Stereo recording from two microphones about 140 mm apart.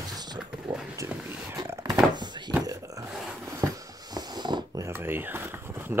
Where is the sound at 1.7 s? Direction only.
20° right (ahead or behind).